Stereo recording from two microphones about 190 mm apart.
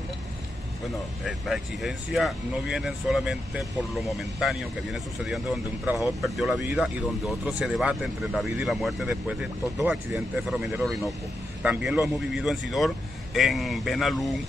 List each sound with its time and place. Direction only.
1.2 s speech: centre (ahead or behind)